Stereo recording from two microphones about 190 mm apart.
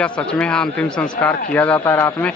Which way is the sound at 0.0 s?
5° left (ahead or behind).